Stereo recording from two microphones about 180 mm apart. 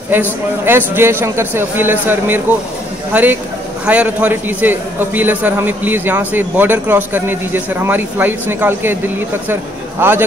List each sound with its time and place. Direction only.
0.1 s a man's voice: 10° right (ahead or behind)